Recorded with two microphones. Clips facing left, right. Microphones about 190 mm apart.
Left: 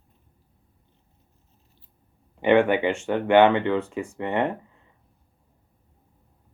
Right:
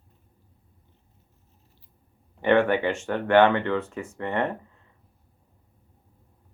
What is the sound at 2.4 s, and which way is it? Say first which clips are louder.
Speech: left 2 dB; 10° left (ahead or behind).